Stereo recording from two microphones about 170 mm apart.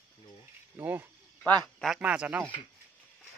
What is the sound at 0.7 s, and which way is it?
A man's voice, 15° right (ahead or behind).